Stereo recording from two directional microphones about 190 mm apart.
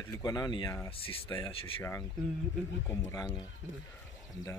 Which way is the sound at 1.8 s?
15° left (ahead or behind).